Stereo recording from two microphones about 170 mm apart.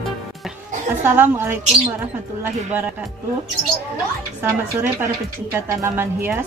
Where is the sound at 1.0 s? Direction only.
15° right (ahead or behind).